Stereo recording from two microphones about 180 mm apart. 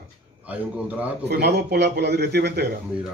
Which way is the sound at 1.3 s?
70° right (ahead or behind).